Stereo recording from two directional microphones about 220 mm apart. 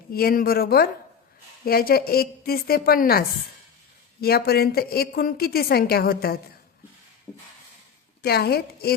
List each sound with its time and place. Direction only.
0.1 s a woman's voice: 40° left (ahead or behind)
8.2 s a woman's voice: 45° left (ahead or behind)